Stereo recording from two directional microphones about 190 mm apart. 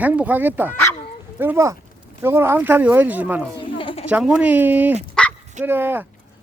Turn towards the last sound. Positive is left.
turn(degrees=-10)  # may be behind; listen again after turning